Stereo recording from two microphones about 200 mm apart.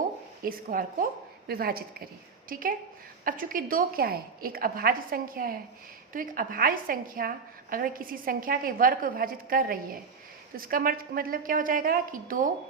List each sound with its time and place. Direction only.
0.4 s a woman's voice: 45° right (ahead or behind)